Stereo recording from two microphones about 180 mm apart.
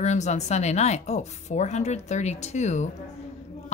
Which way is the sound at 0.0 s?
40° left (ahead or behind).